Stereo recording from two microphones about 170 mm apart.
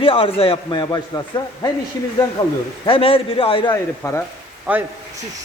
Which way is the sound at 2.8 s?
35° left (ahead or behind).